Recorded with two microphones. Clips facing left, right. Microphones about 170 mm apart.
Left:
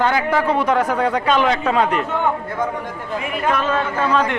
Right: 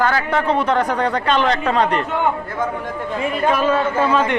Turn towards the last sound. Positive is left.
turn(degrees=0)  # may be behind; listen again after turning